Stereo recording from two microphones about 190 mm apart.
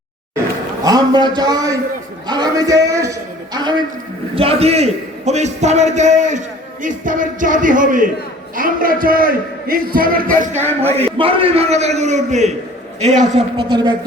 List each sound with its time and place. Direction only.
0.9 s a man's voice: 20° right (ahead or behind); by 10.2 s 50° right (ahead or behind)
10.8 s a man's voice: 35° right (ahead or behind)
13.7 s speech: 20° right (ahead or behind)